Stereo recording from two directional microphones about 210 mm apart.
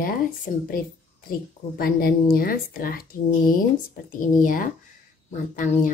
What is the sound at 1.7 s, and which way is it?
Speech, 45° left (ahead or behind).